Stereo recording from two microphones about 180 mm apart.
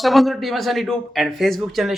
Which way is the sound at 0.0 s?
Centre (ahead or behind).